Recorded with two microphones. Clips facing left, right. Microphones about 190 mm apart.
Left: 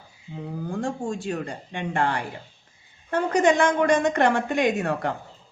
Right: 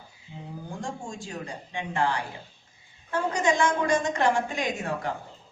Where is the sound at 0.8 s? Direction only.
60° left (ahead or behind).